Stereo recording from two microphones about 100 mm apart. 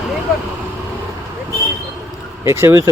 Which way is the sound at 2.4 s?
30° right (ahead or behind).